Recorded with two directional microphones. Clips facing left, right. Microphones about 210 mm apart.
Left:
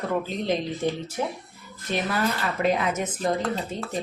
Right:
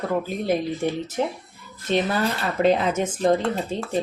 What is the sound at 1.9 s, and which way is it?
Speech, 25° right (ahead or behind).